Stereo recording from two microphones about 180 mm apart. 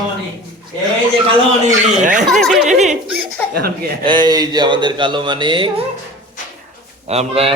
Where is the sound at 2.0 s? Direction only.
45° right (ahead or behind).